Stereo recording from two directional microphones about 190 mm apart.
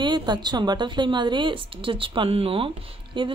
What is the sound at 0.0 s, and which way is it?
A woman's voice, 25° right (ahead or behind).